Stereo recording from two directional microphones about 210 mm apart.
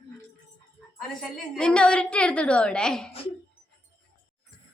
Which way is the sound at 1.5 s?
5° left (ahead or behind).